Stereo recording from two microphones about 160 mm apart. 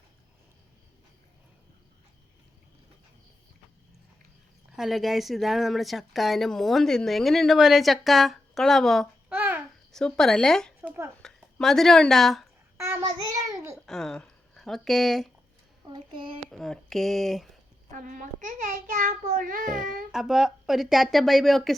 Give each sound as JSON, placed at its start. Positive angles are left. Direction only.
{"t": 4.8, "sound": "speech", "side_deg": 0}
{"t": 9.3, "sound": "babbling", "side_deg": -10}
{"t": 9.9, "sound": "speech", "side_deg": 5}
{"t": 10.8, "sound": "speech", "side_deg": -15}
{"t": 11.2, "sound": "speech", "side_deg": 5}
{"t": 12.7, "sound": "child singing", "side_deg": -15}
{"t": 13.3, "sound": "a sound", "side_deg": -20}
{"t": 13.8, "sound": "speech", "side_deg": 0}
{"t": 15.9, "sound": "a child's voice", "side_deg": -35}
{"t": 16.5, "sound": "speech", "side_deg": 0}
{"t": 17.9, "sound": "a child's voice", "side_deg": -55}
{"t": 20.1, "sound": "speech", "side_deg": -5}